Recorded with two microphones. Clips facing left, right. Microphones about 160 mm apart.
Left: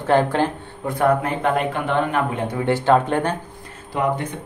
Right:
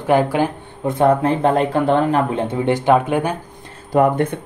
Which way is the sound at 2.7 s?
15° right (ahead or behind).